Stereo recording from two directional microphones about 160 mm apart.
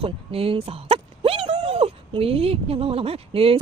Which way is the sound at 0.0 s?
35° right (ahead or behind).